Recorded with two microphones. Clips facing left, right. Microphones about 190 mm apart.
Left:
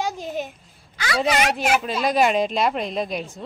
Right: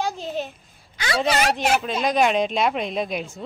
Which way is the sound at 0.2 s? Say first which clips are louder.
Even; 10° left (ahead or behind).